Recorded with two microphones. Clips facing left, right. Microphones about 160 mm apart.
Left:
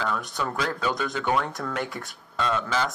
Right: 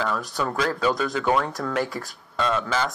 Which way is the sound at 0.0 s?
10° right (ahead or behind).